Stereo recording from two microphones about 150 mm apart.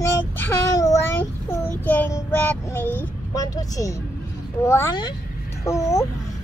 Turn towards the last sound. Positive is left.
turn(degrees=20)  # may be behind; listen again after turning